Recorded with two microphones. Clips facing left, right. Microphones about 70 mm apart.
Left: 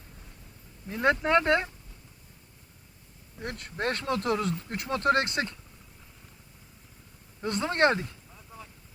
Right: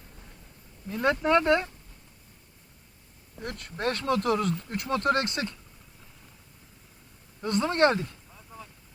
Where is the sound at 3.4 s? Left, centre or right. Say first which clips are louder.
Right 1 dB; left.